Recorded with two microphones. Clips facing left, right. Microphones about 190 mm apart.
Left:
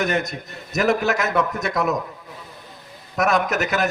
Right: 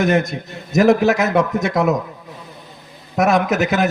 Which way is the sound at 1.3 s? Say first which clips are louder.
Right 5 dB; 25° right (ahead or behind).